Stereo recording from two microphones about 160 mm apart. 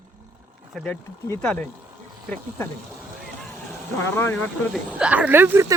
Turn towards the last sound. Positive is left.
turn(degrees=-15)  # may be behind; listen again after turning